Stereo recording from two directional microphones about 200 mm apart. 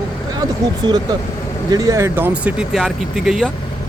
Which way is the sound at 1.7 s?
15° right (ahead or behind).